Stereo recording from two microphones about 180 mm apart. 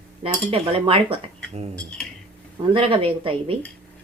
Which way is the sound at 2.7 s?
30° right (ahead or behind).